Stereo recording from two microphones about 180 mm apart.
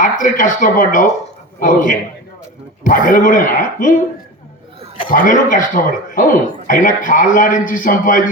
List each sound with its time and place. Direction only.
0.0 s a man's voice: 45° left (ahead or behind)
5.0 s a man's voice: 45° left (ahead or behind)